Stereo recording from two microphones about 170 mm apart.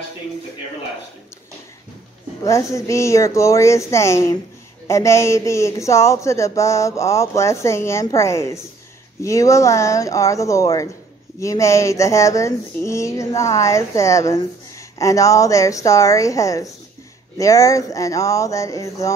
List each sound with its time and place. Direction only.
2.4 s a woman's voice: 15° left (ahead or behind)